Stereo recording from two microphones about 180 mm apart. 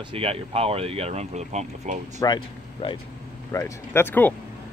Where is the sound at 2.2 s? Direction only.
25° left (ahead or behind); by 4.3 s 10° left (ahead or behind).